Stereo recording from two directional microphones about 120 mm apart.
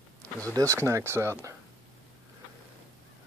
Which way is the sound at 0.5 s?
25° right (ahead or behind).